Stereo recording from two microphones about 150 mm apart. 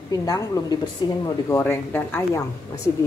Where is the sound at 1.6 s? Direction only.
15° left (ahead or behind).